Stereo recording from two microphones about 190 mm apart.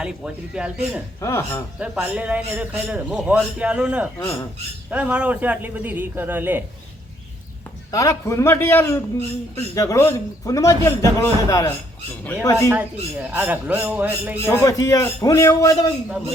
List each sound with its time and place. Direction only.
0.0 s speech: 5° right (ahead or behind)
1.2 s a man's voice: 15° left (ahead or behind)
1.8 s a man's voice: 5° right (ahead or behind)
7.9 s a man's voice: 15° left (ahead or behind)
12.7 s a man's voice: 10° right (ahead or behind)
14.4 s a man's voice: 15° left (ahead or behind)